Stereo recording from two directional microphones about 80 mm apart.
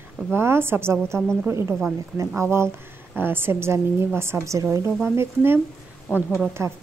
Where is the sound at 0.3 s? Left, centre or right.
Right.